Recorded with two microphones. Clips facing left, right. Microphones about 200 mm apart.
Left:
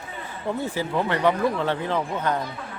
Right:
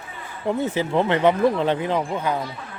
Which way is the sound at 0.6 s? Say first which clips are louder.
Right 4 dB; 20° right (ahead or behind).